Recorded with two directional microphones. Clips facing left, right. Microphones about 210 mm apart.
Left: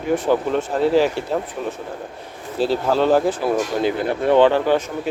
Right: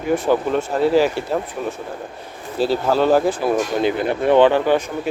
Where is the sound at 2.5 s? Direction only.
5° right (ahead or behind).